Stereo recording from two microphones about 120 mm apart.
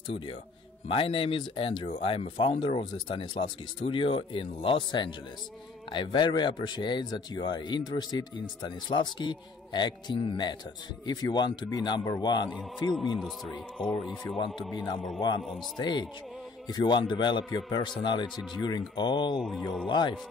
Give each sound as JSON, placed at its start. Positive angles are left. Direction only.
{"t": 0.8, "sound": "speech", "side_deg": 50}
{"t": 2.8, "sound": "speech", "side_deg": 40}
{"t": 12.4, "sound": "a man's voice", "side_deg": 5}
{"t": 14.2, "sound": "speech", "side_deg": 45}
{"t": 18.3, "sound": "a man's voice", "side_deg": 0}
{"t": 18.6, "sound": "speech", "side_deg": 40}